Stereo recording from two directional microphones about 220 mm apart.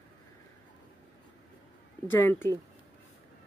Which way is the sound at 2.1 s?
10° left (ahead or behind).